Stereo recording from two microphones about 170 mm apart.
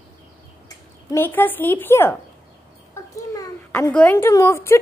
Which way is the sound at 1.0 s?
15° left (ahead or behind).